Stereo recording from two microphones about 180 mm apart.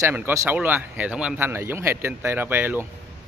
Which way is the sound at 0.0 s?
15° right (ahead or behind).